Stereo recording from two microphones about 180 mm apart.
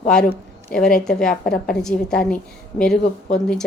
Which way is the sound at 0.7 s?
5° left (ahead or behind).